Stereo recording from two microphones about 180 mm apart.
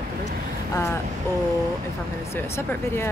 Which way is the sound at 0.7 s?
15° left (ahead or behind).